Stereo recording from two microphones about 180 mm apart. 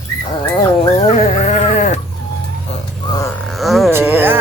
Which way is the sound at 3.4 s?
Centre (ahead or behind).